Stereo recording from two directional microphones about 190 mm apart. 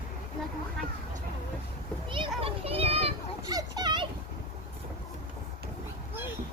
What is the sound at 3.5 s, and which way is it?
Children playing, 20° right (ahead or behind).